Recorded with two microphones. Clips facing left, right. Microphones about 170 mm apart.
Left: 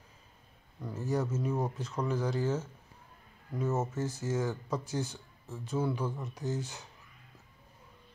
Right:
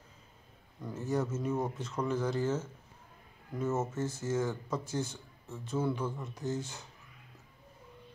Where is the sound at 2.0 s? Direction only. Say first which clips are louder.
Even; 15° left (ahead or behind).